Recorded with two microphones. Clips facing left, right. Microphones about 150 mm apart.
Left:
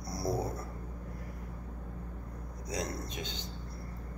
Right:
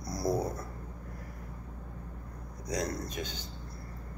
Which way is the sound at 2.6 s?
25° left (ahead or behind).